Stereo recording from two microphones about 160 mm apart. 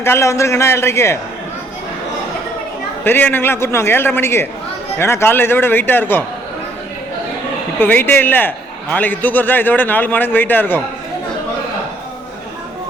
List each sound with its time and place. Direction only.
0.0 s a man's voice: 15° left (ahead or behind)
3.0 s a man's voice: 10° left (ahead or behind)
7.8 s a man's voice: 10° left (ahead or behind)